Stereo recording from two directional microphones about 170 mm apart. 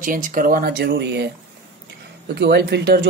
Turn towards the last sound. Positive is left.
turn(degrees=-70)  # may be behind; listen again after turning